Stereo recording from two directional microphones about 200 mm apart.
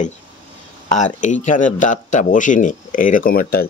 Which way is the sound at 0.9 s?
40° left (ahead or behind).